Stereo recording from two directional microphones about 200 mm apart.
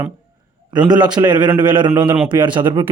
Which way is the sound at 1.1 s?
20° right (ahead or behind).